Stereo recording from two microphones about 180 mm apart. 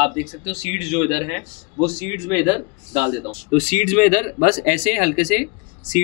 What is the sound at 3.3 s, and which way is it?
Speech, 40° left (ahead or behind).